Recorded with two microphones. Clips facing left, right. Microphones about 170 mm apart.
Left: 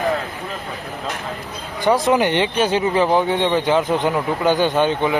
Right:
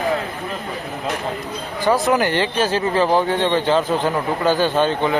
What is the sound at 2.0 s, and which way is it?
Speech, 20° left (ahead or behind).